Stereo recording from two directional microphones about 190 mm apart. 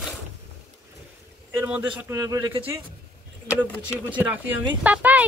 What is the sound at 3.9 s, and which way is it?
Speech, 10° right (ahead or behind).